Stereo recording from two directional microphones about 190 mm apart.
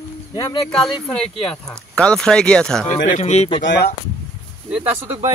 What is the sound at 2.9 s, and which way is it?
Speech, 40° left (ahead or behind).